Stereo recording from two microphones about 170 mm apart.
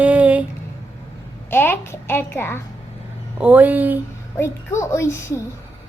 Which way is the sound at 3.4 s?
10° right (ahead or behind).